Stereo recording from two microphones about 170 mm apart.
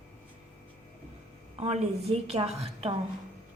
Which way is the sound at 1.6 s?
40° right (ahead or behind).